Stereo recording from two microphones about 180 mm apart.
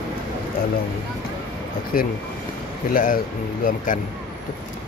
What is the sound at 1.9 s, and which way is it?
Speech, 50° left (ahead or behind).